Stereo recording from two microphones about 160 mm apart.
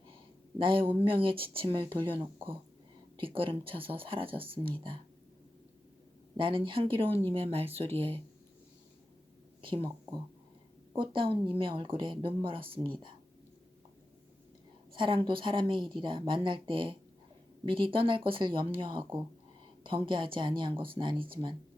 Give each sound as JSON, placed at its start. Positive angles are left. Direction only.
{"t": 0.6, "sound": "a woman's voice", "side_deg": -35}
{"t": 6.3, "sound": "a woman's voice", "side_deg": -30}
{"t": 9.6, "sound": "a woman's voice", "side_deg": -30}
{"t": 14.9, "sound": "a woman's voice", "side_deg": -30}